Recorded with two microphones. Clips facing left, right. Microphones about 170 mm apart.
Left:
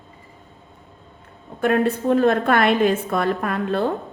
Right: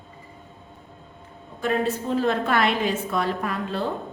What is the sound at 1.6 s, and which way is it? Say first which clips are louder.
A woman's voice: left 5 dB; 60° left (ahead or behind).